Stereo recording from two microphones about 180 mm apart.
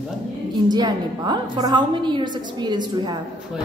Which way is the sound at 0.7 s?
20° right (ahead or behind).